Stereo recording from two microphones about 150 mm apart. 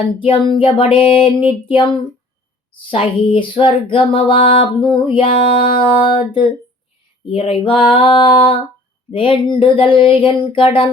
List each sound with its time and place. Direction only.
0.2 s music: 35° left (ahead or behind)